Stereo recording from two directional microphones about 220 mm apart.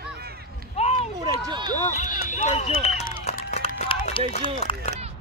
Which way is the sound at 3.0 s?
35° left (ahead or behind).